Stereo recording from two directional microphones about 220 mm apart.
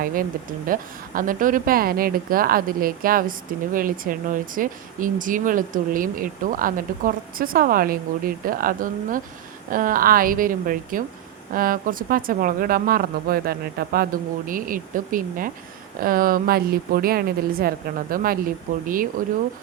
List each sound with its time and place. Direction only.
0.0 s speech: 40° right (ahead or behind)